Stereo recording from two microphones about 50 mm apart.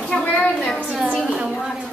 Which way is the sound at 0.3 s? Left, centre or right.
Left.